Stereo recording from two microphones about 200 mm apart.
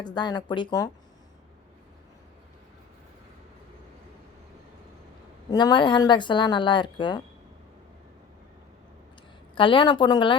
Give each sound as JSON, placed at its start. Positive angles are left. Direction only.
{"t": 0.0, "sound": "speech", "side_deg": 20}
{"t": 5.5, "sound": "speech", "side_deg": 20}
{"t": 9.6, "sound": "speech", "side_deg": 25}